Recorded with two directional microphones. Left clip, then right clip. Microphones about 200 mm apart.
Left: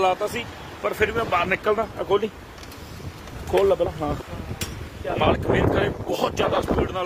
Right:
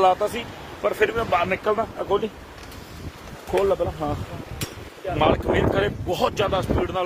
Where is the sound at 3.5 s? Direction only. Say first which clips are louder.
Left 2 dB; 15° left (ahead or behind).